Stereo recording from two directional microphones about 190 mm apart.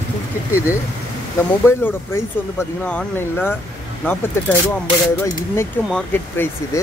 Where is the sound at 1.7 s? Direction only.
15° left (ahead or behind).